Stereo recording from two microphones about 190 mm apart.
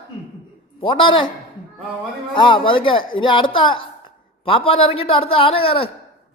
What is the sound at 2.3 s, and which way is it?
A man's voice, 25° left (ahead or behind).